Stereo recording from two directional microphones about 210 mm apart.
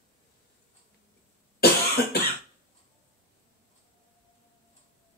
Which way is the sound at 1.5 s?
50° left (ahead or behind).